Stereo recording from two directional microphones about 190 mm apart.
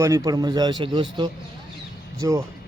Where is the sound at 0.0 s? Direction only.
20° right (ahead or behind).